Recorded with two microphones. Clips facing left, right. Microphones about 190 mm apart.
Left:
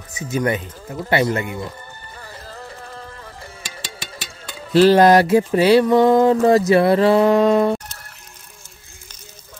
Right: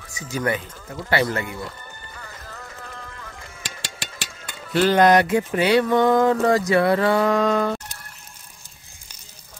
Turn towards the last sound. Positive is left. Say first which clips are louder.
# left 5 dB
turn(degrees=25)  # may be behind; listen again after turning